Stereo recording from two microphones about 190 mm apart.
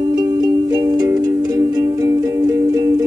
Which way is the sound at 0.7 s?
20° right (ahead or behind).